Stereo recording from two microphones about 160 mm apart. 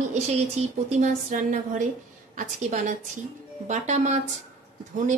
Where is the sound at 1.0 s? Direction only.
55° right (ahead or behind).